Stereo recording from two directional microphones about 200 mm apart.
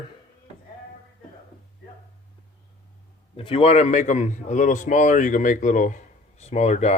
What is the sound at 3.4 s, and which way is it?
A man's voice, 25° left (ahead or behind).